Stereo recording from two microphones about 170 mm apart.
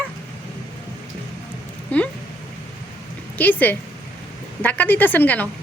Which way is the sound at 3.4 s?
10° left (ahead or behind).